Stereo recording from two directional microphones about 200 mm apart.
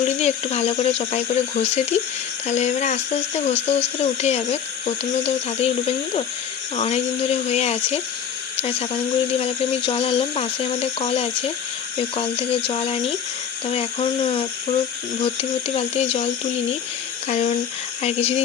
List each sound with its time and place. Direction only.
0.0 s speech: 35° left (ahead or behind)
9.4 s speech: 30° left (ahead or behind)